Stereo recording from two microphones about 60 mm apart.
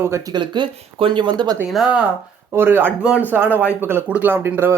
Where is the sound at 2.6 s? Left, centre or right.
Right.